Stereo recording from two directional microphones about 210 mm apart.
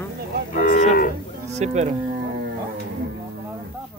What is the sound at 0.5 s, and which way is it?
Cattle, 40° left (ahead or behind).